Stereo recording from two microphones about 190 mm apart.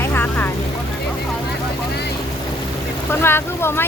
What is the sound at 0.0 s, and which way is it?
Vehicle, 10° left (ahead or behind).